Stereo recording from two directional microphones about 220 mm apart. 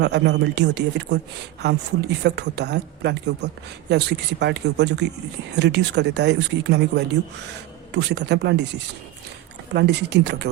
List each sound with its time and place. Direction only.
0.0 s speech: 50° right (ahead or behind)
9.7 s speech: 50° right (ahead or behind)